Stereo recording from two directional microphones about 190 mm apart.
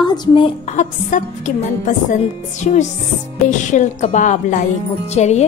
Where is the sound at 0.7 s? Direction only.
40° left (ahead or behind).